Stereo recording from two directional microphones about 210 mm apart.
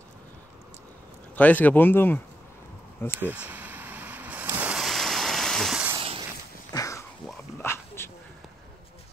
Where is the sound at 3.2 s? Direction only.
10° right (ahead or behind).